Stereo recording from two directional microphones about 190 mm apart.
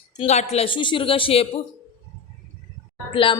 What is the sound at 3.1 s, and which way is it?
Speech, 25° left (ahead or behind).